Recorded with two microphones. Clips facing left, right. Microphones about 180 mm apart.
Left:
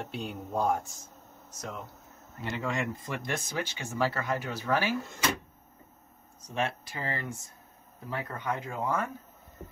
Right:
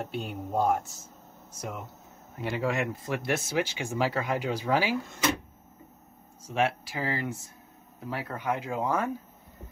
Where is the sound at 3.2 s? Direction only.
10° right (ahead or behind).